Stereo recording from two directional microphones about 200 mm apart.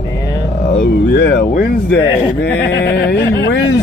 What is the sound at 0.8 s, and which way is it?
Speech, 55° left (ahead or behind).